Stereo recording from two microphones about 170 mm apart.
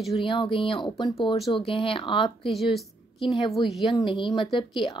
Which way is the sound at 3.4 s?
30° left (ahead or behind).